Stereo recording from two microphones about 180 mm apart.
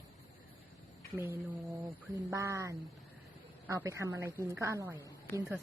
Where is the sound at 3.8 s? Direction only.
15° right (ahead or behind).